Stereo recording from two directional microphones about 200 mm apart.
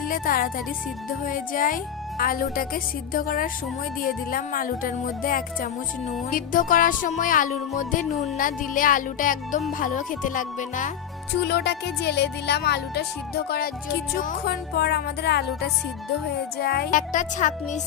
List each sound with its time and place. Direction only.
0.1 s speech: 45° left (ahead or behind)
7.8 s music: 35° left (ahead or behind)
11.4 s music: 55° left (ahead or behind); by 17.7 s 40° left (ahead or behind)